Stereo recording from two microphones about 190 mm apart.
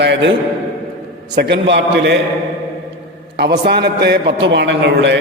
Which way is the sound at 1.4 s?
65° right (ahead or behind).